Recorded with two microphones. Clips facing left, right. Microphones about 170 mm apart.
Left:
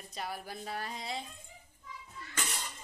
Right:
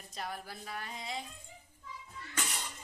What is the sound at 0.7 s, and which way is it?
Speech, 35° left (ahead or behind).